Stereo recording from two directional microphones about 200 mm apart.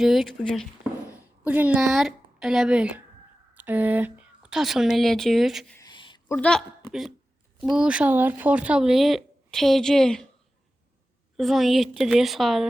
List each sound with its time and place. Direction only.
0.0 s speech: centre (ahead or behind)
5.7 s a sound: 20° left (ahead or behind)
6.2 s speech: 5° left (ahead or behind)
11.3 s speech: centre (ahead or behind)